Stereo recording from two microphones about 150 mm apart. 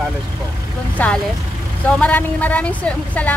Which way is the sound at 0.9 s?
10° left (ahead or behind).